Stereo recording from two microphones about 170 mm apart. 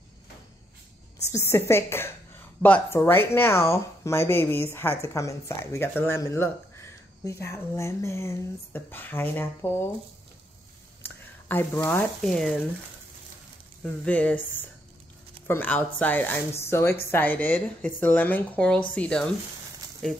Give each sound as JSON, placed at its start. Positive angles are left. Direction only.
{"t": 1.3, "sound": "speech", "side_deg": 15}
{"t": 11.0, "sound": "a sound", "side_deg": 10}
{"t": 12.2, "sound": "speech", "side_deg": 5}
{"t": 14.0, "sound": "speech", "side_deg": 10}